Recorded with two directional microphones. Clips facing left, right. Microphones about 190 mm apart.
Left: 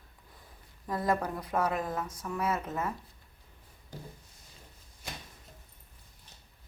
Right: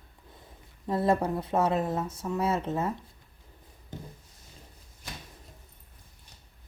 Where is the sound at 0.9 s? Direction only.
25° right (ahead or behind).